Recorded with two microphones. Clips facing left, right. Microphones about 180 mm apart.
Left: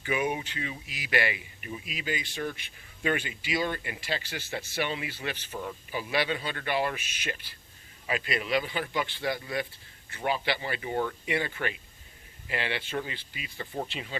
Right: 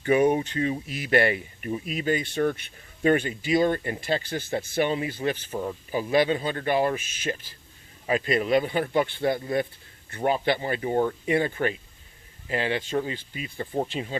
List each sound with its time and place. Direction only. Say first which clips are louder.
0.0 s speech: right 9 dB; 40° right (ahead or behind)
3.0 s speech: right 8 dB; 40° right (ahead or behind)